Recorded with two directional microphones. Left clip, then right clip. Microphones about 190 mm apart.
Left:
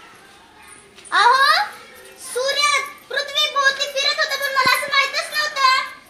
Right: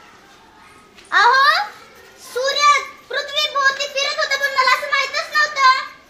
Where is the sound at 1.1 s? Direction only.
15° right (ahead or behind).